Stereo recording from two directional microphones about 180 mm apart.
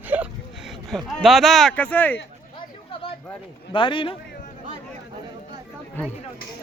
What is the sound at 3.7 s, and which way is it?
Speech, 30° left (ahead or behind).